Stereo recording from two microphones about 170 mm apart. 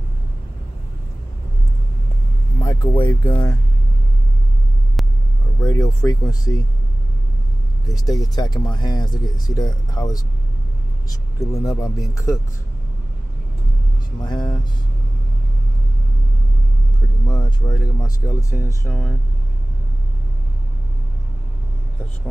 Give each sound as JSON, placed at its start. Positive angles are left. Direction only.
{"t": 2.6, "sound": "vehicle", "side_deg": 20}
{"t": 3.3, "sound": "speech", "side_deg": 20}
{"t": 5.0, "sound": "vehicle", "side_deg": 0}
{"t": 5.6, "sound": "speech", "side_deg": 20}
{"t": 7.8, "sound": "speech", "side_deg": 20}
{"t": 14.2, "sound": "speech", "side_deg": 25}
{"t": 17.3, "sound": "speech", "side_deg": 25}